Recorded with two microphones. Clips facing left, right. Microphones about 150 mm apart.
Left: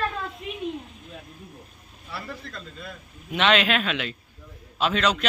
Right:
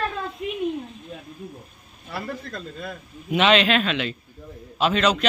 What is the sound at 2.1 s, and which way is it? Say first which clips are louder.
Speech: right 5 dB; 50° right (ahead or behind).